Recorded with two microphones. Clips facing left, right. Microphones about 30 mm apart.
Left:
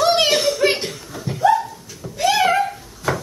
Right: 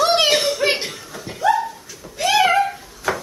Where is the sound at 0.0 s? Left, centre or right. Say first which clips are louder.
Even; centre.